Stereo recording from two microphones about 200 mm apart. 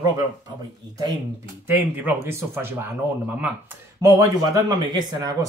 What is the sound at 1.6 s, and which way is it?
Speech, 10° right (ahead or behind).